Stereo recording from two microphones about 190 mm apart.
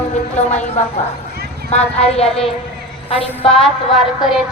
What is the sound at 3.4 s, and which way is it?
Music, 30° left (ahead or behind).